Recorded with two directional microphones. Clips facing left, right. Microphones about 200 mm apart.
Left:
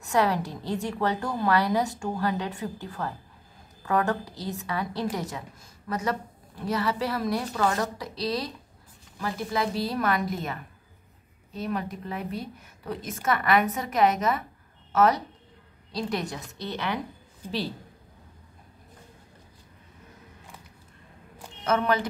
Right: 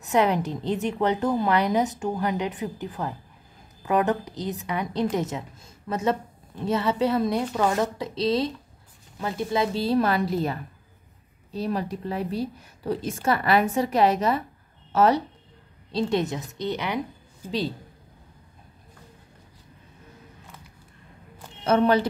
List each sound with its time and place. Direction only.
0.0 s a woman's voice: 20° right (ahead or behind)
21.6 s a woman's voice: 30° right (ahead or behind)